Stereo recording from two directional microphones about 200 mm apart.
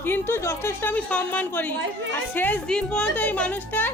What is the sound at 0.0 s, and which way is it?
A child's voice, 10° left (ahead or behind).